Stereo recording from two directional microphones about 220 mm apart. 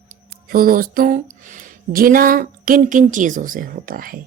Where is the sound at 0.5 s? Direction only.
40° right (ahead or behind).